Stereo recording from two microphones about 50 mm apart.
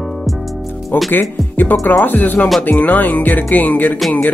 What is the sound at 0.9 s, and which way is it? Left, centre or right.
Music, left.